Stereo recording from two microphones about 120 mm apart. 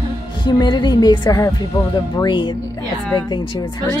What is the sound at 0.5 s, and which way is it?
A woman's voice, 40° left (ahead or behind).